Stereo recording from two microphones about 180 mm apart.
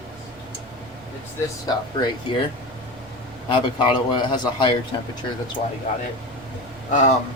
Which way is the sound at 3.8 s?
25° left (ahead or behind).